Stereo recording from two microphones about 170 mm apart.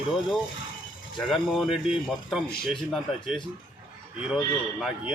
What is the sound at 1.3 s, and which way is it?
Speech, centre (ahead or behind).